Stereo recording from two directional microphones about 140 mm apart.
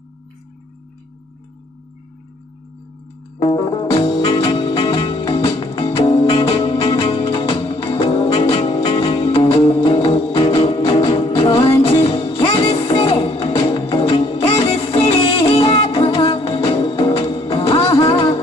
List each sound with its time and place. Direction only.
3.3 s music: 35° left (ahead or behind)